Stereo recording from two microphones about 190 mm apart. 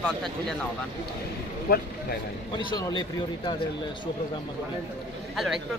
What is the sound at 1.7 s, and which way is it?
Speech, 55° left (ahead or behind).